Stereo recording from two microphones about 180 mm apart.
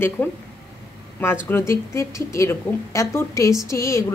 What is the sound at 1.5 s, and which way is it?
A woman's voice, 15° left (ahead or behind).